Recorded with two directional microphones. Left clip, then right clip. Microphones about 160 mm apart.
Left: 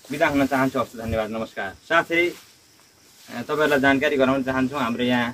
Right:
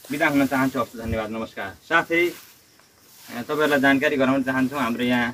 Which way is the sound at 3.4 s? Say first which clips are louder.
Even; 15° left (ahead or behind).